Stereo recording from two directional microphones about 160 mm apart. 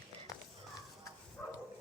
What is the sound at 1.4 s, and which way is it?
Dog, 5° left (ahead or behind).